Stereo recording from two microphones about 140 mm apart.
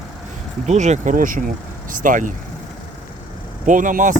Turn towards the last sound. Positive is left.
turn(degrees=-65)  # may be behind; listen again after turning